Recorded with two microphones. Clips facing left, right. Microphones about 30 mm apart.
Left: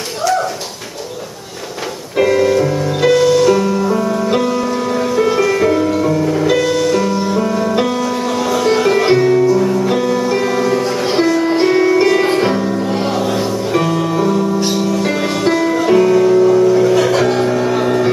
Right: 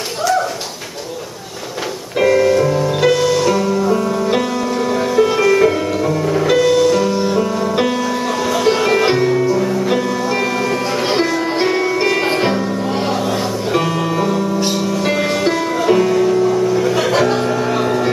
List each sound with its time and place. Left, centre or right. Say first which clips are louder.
2.1 s music: even; centre
12.0 s music: left 3 dB; centre
12.9 s music: left 1 dB; centre
16.9 s music: left 2 dB; centre